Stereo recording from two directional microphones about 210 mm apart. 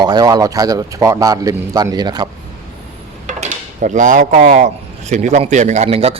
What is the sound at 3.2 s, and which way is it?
Speech, 35° right (ahead or behind).